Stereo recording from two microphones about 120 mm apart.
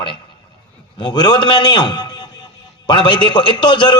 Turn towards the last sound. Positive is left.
turn(degrees=40)  # may be behind; listen again after turning